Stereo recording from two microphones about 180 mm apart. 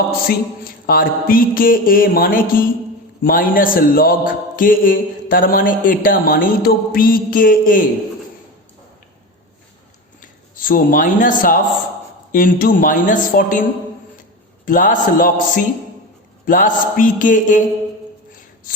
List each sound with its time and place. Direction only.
0.3 s a man's voice: 55° left (ahead or behind)
10.2 s a man's voice: 50° left (ahead or behind)